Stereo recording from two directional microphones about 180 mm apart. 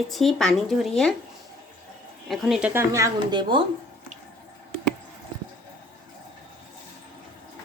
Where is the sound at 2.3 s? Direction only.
Centre (ahead or behind); by 3.6 s 25° right (ahead or behind).